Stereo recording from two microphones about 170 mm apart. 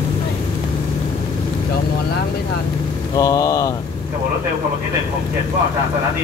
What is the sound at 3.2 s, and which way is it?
Speech, 20° left (ahead or behind).